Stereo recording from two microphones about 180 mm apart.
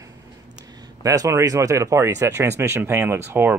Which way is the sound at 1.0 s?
20° right (ahead or behind).